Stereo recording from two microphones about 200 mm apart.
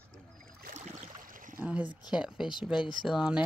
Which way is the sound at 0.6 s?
40° right (ahead or behind).